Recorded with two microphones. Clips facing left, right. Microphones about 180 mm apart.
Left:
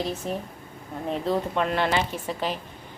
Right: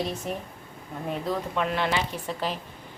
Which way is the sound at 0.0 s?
Centre (ahead or behind).